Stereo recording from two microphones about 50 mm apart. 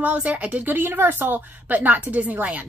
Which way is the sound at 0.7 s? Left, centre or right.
Right.